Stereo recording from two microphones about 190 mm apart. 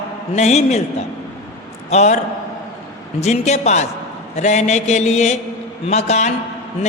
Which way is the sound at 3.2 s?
35° left (ahead or behind).